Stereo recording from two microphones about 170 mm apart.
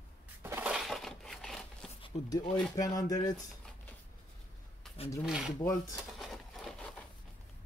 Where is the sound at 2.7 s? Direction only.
20° left (ahead or behind).